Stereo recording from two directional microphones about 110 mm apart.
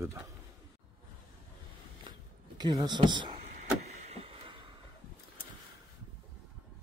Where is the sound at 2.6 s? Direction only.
40° right (ahead or behind).